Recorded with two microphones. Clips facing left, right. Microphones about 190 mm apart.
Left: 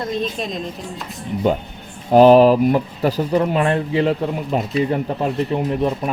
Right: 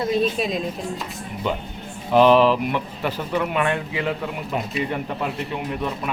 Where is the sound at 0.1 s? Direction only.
5° right (ahead or behind).